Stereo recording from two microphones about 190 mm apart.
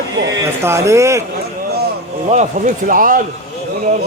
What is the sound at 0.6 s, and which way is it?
Speech, 15° right (ahead or behind).